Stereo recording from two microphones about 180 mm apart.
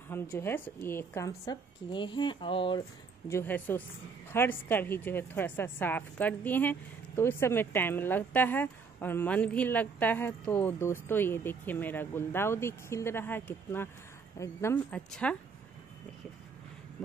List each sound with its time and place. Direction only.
0.4 s a woman's voice: 15° left (ahead or behind)
3.3 s a woman's voice: 15° left (ahead or behind)